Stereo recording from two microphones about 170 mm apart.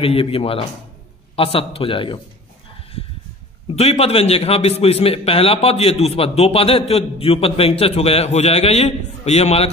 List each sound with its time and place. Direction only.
0.0 s a man's voice: 35° left (ahead or behind)
3.7 s a man's voice: 40° left (ahead or behind)